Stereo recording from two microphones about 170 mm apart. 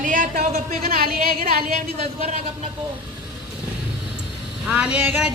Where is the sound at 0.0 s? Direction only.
50° right (ahead or behind).